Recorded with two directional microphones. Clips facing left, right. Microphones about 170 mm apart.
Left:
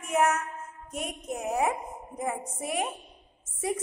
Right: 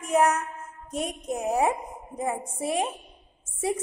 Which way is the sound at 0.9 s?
35° right (ahead or behind).